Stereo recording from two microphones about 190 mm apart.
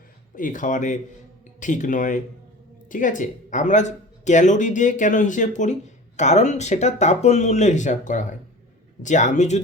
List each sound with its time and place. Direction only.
0.3 s speech: 45° left (ahead or behind)